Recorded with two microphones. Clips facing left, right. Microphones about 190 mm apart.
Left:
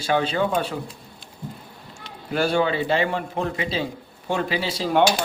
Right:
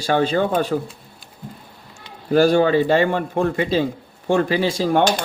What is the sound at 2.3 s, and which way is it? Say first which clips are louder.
A man's voice: right 7 dB; 45° right (ahead or behind).